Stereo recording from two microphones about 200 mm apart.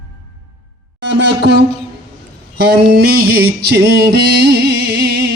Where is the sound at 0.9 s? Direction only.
55° right (ahead or behind).